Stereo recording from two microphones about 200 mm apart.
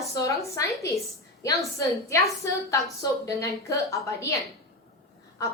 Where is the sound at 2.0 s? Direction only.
15° left (ahead or behind).